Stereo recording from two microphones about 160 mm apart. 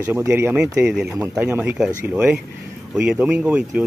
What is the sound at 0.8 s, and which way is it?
Speech, 5° right (ahead or behind).